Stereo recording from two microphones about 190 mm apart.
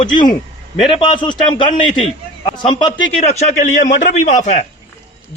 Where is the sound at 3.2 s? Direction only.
35° left (ahead or behind).